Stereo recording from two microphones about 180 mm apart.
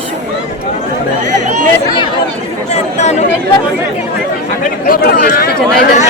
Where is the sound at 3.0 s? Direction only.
40° left (ahead or behind).